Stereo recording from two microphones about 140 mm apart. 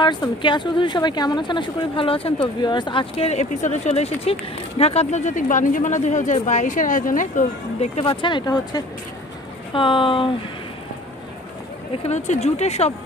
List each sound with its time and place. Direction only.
0.0 s speech: 35° left (ahead or behind)
12.0 s speech: 50° left (ahead or behind)